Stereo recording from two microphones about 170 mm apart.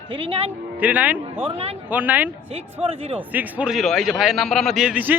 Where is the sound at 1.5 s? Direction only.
35° right (ahead or behind).